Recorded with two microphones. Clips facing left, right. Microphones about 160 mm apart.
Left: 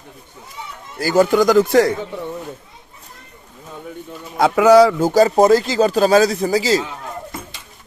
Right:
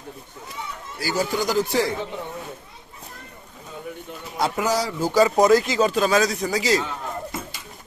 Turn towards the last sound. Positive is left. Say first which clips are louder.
# left 5 dB
turn(degrees=30)  # may be behind; listen again after turning